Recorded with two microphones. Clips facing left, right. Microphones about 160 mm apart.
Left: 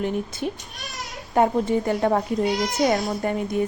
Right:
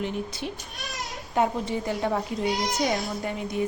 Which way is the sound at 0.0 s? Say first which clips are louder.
Left 5 dB; 50° left (ahead or behind).